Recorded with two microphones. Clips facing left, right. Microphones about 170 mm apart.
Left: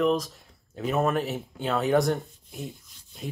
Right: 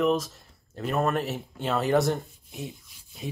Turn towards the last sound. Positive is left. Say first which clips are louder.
# right 1 dB
turn(degrees=0)  # may be behind; listen again after turning